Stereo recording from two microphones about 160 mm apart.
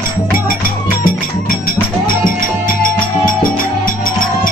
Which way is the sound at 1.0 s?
60° left (ahead or behind).